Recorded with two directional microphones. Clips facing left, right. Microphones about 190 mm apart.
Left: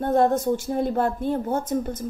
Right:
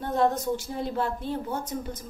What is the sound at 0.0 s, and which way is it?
A woman's voice, 50° left (ahead or behind).